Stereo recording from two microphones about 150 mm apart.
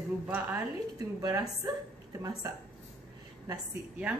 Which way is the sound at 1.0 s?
25° right (ahead or behind).